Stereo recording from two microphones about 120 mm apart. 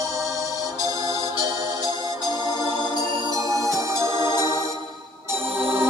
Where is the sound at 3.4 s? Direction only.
30° right (ahead or behind).